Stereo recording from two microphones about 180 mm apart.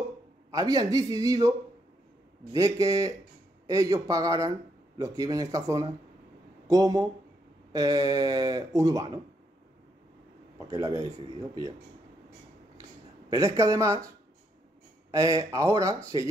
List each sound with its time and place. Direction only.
0.5 s a man's voice: 20° right (ahead or behind)
2.5 s speech: 20° right (ahead or behind)
10.7 s speech: 20° right (ahead or behind)
13.3 s speech: 20° right (ahead or behind)